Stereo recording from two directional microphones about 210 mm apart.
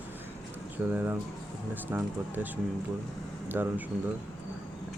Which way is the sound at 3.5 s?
10° right (ahead or behind).